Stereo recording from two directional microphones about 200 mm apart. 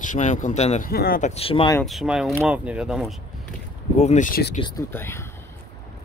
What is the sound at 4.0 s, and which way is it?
Speech, 35° left (ahead or behind).